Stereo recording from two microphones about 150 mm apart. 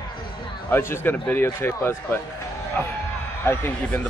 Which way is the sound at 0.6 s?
15° left (ahead or behind).